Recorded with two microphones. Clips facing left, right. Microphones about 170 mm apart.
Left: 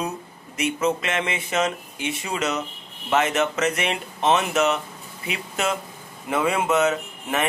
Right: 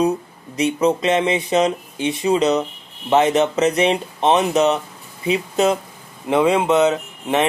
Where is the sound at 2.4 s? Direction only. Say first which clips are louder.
Right 5 dB; 35° right (ahead or behind).